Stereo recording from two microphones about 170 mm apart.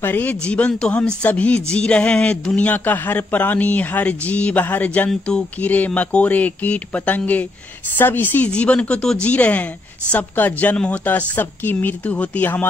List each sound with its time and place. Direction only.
0.0 s speech: 10° left (ahead or behind)